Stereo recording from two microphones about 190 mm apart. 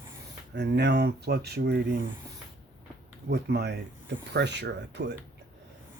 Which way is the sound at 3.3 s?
60° right (ahead or behind).